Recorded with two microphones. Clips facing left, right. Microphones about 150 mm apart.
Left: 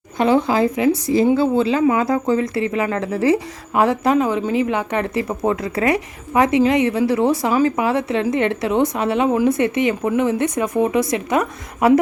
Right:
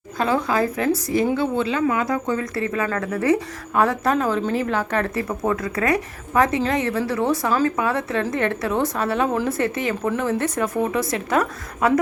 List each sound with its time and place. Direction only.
0.2 s speech: 25° left (ahead or behind)
4.1 s speech: 15° left (ahead or behind)